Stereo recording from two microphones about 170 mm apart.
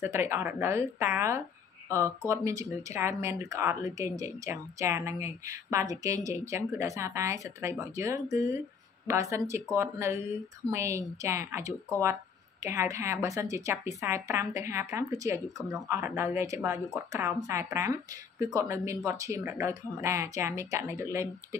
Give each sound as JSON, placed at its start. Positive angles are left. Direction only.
{"t": 0.0, "sound": "speech", "side_deg": -15}